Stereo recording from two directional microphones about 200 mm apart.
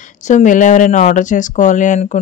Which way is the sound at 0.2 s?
35° left (ahead or behind).